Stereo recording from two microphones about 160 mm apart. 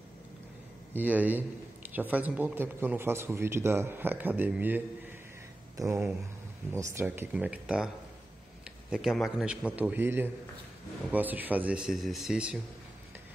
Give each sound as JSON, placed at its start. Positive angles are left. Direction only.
{"t": 0.9, "sound": "a man's voice", "side_deg": -10}
{"t": 8.9, "sound": "a man's voice", "side_deg": 0}